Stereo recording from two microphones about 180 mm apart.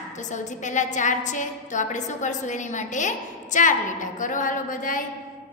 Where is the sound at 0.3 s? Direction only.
45° left (ahead or behind).